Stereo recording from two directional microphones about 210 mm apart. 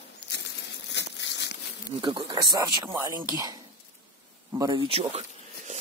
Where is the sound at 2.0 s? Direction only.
20° right (ahead or behind).